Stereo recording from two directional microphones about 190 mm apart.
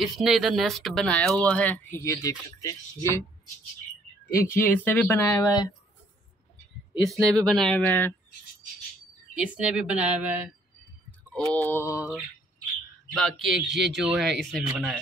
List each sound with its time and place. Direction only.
0.0 s speech: centre (ahead or behind); by 3.3 s 15° left (ahead or behind)
4.5 s speech: 10° left (ahead or behind)
7.1 s speech: centre (ahead or behind)
9.3 s speech: 5° right (ahead or behind)
11.3 s speech: 5° left (ahead or behind)
11.8 s mantra: 10° right (ahead or behind)
13.1 s speech: centre (ahead or behind)